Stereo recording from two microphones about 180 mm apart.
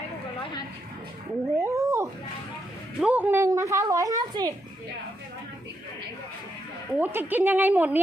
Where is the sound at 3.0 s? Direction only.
10° right (ahead or behind).